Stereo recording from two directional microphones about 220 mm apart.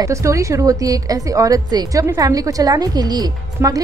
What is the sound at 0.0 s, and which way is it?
A woman's voice, 15° right (ahead or behind).